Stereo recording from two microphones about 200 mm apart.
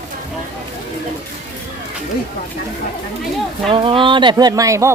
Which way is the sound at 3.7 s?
25° right (ahead or behind).